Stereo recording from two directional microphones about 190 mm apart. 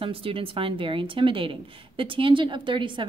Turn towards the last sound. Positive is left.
turn(degrees=-25)  # may be behind; listen again after turning